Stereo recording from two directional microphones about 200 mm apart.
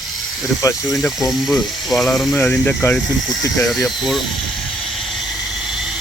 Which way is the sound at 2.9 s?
Centre (ahead or behind).